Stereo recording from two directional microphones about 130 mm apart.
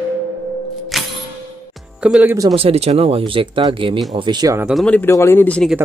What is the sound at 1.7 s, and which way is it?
Music, 5° right (ahead or behind).